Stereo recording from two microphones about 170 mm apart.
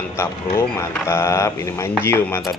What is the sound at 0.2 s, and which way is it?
A man's voice, 15° left (ahead or behind).